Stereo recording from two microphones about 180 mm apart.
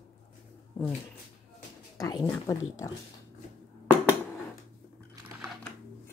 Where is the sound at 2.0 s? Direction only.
15° left (ahead or behind).